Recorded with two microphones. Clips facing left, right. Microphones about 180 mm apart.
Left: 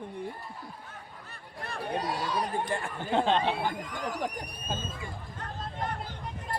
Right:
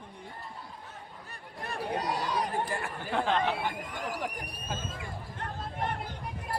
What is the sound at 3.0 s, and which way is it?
Speech, 25° left (ahead or behind).